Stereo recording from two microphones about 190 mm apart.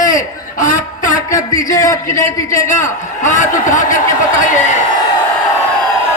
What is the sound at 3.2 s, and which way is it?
Speech, 40° left (ahead or behind).